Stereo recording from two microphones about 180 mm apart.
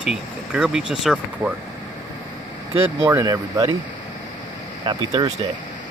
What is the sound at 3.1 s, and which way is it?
Speech, 20° right (ahead or behind).